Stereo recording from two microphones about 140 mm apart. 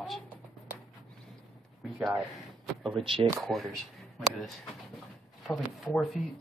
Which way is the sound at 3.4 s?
Centre (ahead or behind).